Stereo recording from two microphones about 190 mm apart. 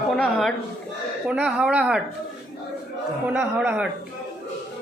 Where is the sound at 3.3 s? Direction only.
5° right (ahead or behind).